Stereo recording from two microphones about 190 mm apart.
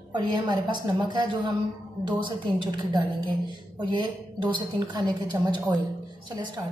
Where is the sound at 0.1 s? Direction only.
25° right (ahead or behind).